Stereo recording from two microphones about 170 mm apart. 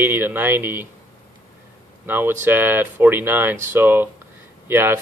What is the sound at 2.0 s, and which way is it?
A man's voice, 10° right (ahead or behind).